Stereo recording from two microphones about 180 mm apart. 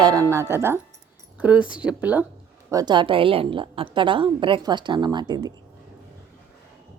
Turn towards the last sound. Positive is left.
turn(degrees=-25)  # may be behind; listen again after turning